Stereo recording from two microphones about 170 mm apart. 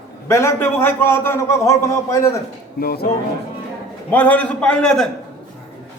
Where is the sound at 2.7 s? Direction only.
65° left (ahead or behind).